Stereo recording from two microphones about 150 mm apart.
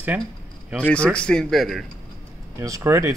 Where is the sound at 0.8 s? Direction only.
10° left (ahead or behind).